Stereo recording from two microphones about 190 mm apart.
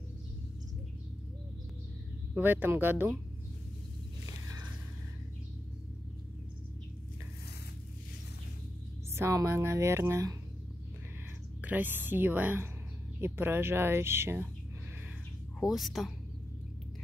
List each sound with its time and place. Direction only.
2.3 s speech: 10° right (ahead or behind)
9.1 s speech: 15° right (ahead or behind)
11.6 s speech: 10° right (ahead or behind)
15.6 s a woman's voice: centre (ahead or behind)